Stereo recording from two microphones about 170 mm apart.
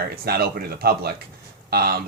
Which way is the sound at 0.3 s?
65° right (ahead or behind).